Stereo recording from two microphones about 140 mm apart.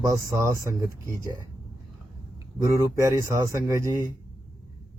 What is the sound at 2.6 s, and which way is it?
Speech, 20° right (ahead or behind).